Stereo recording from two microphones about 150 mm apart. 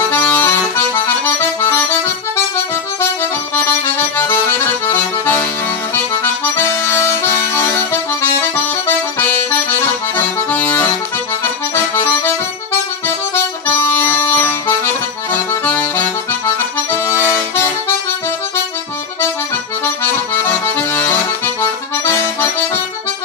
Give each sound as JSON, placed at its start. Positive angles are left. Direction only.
{"t": 0.1, "sound": "accordion", "side_deg": 15}
{"t": 6.5, "sound": "accordion", "side_deg": 15}
{"t": 8.2, "sound": "accordion", "side_deg": 15}
{"t": 13.0, "sound": "music", "side_deg": 15}
{"t": 15.3, "sound": "accordion", "side_deg": 15}
{"t": 17.1, "sound": "music", "side_deg": 20}
{"t": 19.8, "sound": "accordion", "side_deg": 15}